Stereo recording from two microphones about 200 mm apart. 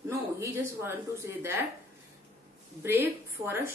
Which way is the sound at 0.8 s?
10° right (ahead or behind).